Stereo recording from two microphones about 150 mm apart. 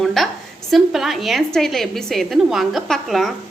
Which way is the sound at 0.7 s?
Centre (ahead or behind).